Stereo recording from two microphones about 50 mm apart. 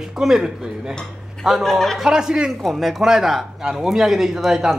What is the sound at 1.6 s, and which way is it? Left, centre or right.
Speech, centre.